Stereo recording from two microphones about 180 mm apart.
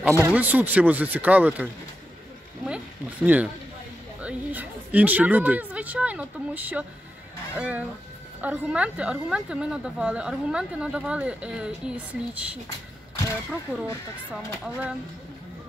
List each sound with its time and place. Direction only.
0.2 s speech: 10° right (ahead or behind)
2.6 s a sound: 5° right (ahead or behind)
4.2 s a woman's voice: 10° right (ahead or behind)
14.3 s a woman's voice: 5° right (ahead or behind)